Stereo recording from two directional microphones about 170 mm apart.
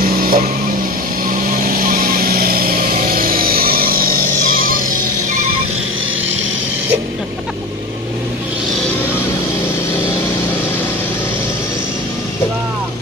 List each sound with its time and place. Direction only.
0.0 s vehicle: 55° right (ahead or behind)